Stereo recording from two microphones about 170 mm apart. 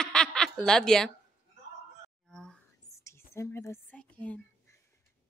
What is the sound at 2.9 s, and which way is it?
Whispering, 15° left (ahead or behind).